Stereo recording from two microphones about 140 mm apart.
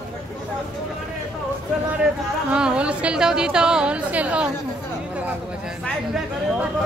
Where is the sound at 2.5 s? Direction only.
5° right (ahead or behind).